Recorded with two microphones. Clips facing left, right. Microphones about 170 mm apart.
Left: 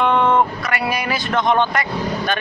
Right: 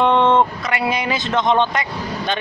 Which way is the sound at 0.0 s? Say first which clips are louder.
Right 1 dB; 30° right (ahead or behind).